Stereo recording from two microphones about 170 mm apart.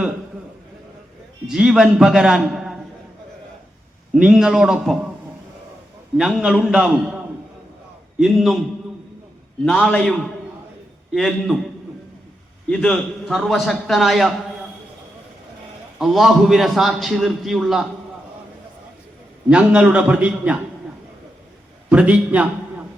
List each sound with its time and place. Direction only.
1.5 s a man's voice: 5° right (ahead or behind)
4.1 s a man's voice: 5° right (ahead or behind)
6.1 s a man's voice: 5° right (ahead or behind)
8.2 s a man's voice: centre (ahead or behind)
9.6 s a man's voice: 5° left (ahead or behind)
12.7 s a man's voice: 5° left (ahead or behind)
16.0 s a man's voice: centre (ahead or behind)
19.5 s a man's voice: 5° right (ahead or behind)
21.8 s a man's voice: 5° right (ahead or behind)